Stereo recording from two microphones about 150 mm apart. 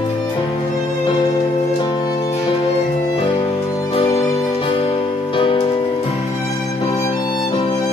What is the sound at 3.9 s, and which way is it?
Music, 40° left (ahead or behind).